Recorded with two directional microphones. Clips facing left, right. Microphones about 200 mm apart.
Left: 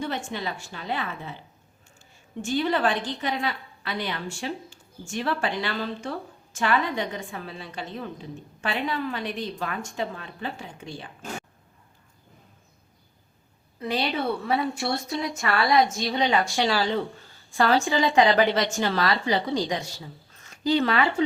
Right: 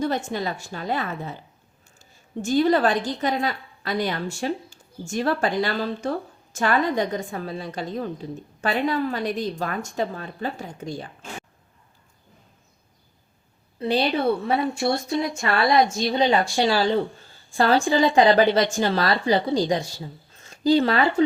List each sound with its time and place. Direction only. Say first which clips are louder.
0.3 s a woman's voice: right 4 dB; 40° right (ahead or behind)
13.7 s a woman's voice: right 5 dB; 30° right (ahead or behind)